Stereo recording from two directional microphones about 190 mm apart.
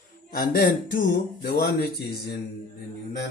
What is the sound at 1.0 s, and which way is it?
Speech, 60° left (ahead or behind).